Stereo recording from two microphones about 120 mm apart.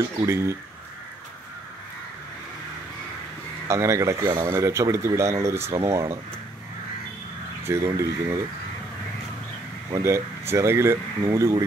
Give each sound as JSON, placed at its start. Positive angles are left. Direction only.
{"t": 0.3, "sound": "speech", "side_deg": -25}
{"t": 3.6, "sound": "speech", "side_deg": -25}
{"t": 7.6, "sound": "speech", "side_deg": -25}
{"t": 9.8, "sound": "speech", "side_deg": -30}